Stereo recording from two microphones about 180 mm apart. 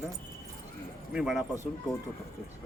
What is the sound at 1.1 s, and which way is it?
Speech, centre (ahead or behind).